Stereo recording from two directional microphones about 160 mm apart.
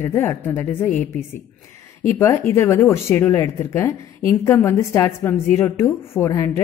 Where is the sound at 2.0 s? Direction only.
15° left (ahead or behind).